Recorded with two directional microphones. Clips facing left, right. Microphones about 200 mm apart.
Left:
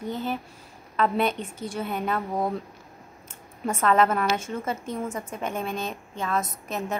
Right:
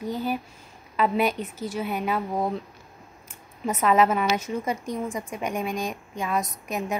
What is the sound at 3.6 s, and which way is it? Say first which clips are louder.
A woman's voice: right 1 dB; 10° right (ahead or behind).